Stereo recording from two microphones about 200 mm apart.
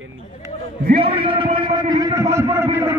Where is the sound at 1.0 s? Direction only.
25° right (ahead or behind).